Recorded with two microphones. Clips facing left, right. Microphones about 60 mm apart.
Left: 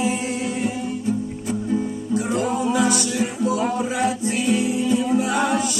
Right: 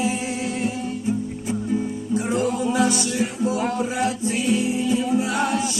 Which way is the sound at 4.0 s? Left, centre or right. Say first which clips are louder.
Left 1 dB; left.